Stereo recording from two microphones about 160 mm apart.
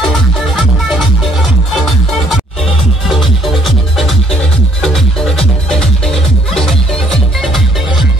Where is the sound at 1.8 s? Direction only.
Centre (ahead or behind).